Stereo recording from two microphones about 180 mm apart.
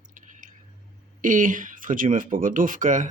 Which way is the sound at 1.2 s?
45° right (ahead or behind).